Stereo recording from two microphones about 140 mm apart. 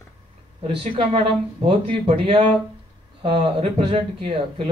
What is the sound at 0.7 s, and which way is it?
Speech, 40° right (ahead or behind).